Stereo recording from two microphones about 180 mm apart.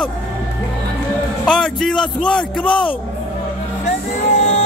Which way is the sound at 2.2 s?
5° left (ahead or behind).